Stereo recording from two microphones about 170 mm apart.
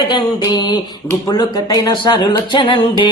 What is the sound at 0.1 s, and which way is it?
Speech, 25° left (ahead or behind).